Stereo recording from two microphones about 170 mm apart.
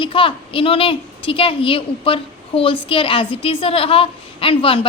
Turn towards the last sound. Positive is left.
turn(degrees=30)  # may be behind; listen again after turning